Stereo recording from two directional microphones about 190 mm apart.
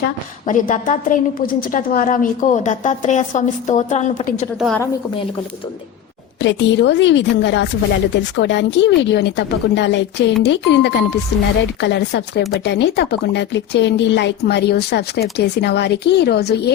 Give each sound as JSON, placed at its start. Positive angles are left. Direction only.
{"t": 0.4, "sound": "a woman's voice", "side_deg": 40}
{"t": 4.5, "sound": "a woman's voice", "side_deg": 0}
{"t": 6.4, "sound": "speech", "side_deg": 70}